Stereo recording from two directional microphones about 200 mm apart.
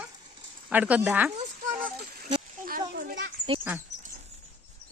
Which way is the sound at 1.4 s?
40° right (ahead or behind).